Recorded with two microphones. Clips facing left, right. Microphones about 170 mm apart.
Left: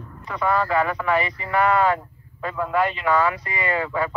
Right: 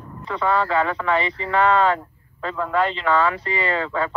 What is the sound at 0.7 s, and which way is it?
Speech, 25° right (ahead or behind).